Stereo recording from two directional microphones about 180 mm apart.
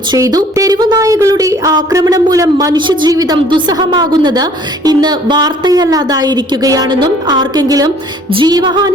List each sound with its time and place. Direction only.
0.1 s a woman's voice: 20° right (ahead or behind)